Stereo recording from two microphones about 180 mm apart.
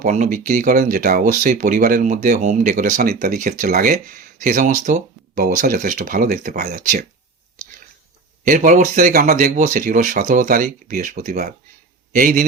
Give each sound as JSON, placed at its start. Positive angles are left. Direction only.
{"t": 0.0, "sound": "speech", "side_deg": -45}
{"t": 8.4, "sound": "speech", "side_deg": -45}